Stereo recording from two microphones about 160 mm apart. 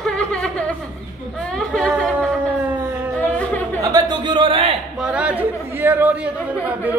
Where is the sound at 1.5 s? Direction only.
5° left (ahead or behind).